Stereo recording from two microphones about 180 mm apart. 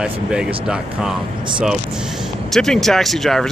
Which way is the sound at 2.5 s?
Centre (ahead or behind).